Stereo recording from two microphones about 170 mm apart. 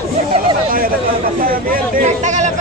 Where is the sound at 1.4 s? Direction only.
50° right (ahead or behind).